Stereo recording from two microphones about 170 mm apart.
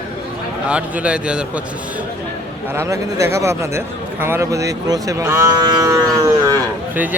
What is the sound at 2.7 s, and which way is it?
A man's voice, 15° right (ahead or behind).